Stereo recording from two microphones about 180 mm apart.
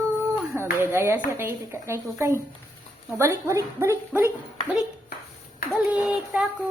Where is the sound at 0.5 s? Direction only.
15° right (ahead or behind).